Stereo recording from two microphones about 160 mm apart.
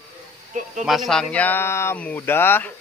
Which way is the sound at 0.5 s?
50° right (ahead or behind).